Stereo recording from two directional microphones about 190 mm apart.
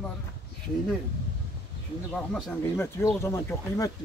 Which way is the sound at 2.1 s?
5° left (ahead or behind).